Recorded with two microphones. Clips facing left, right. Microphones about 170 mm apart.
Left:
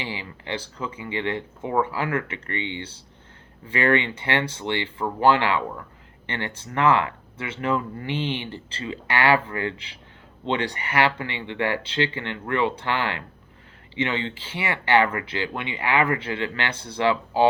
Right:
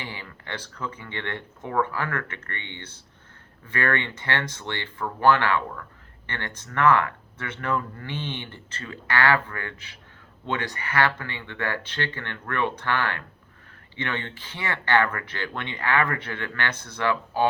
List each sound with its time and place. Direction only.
0.0 s speech: 15° left (ahead or behind)